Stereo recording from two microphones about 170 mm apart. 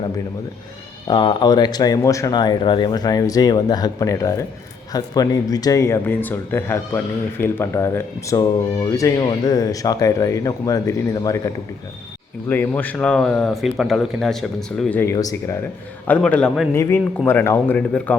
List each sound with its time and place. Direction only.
1.0 s speech: 25° left (ahead or behind)
16.0 s a man's voice: 10° left (ahead or behind)
16.7 s a man's voice: 15° left (ahead or behind)